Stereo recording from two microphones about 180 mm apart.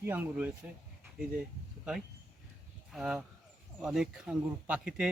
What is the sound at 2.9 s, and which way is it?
Speech, 5° right (ahead or behind).